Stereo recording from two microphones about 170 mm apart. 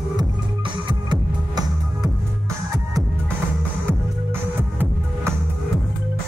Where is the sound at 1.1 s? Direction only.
25° right (ahead or behind).